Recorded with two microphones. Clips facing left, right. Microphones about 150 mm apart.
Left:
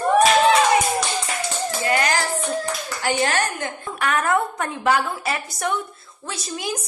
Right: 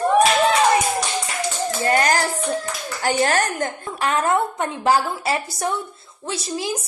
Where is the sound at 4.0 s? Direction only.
30° right (ahead or behind).